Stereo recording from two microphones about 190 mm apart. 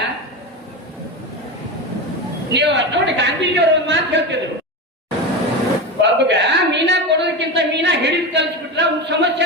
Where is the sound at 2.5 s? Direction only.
65° right (ahead or behind).